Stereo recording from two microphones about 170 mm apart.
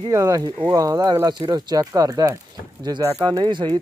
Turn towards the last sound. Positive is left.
turn(degrees=-25)  # may be behind; listen again after turning